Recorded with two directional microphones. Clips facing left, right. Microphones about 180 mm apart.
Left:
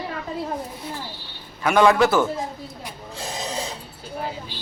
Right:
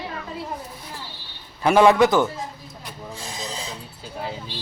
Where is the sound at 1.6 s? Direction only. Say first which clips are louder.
Right 2 dB; 25° right (ahead or behind).